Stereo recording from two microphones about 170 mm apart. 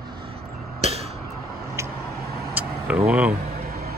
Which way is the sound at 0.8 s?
35° right (ahead or behind).